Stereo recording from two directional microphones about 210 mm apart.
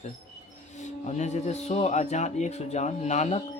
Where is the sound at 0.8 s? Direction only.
35° left (ahead or behind).